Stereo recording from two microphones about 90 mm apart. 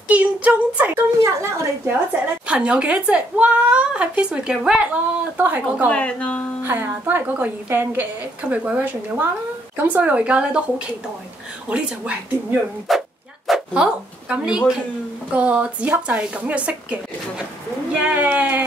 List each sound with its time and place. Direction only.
0.1 s speech: 15° right (ahead or behind)
1.2 s speech: 30° right (ahead or behind)
2.4 s speech: 15° right (ahead or behind)
5.9 s speech: 15° left (ahead or behind)
6.6 s a woman's voice: 25° right (ahead or behind)
11.7 s speech: 15° right (ahead or behind)
12.9 s speech: centre (ahead or behind)
13.5 s a sound: centre (ahead or behind)
14.3 s speech: 10° right (ahead or behind)